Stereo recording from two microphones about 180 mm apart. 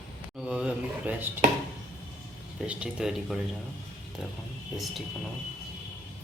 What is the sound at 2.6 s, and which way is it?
Speech, 5° right (ahead or behind).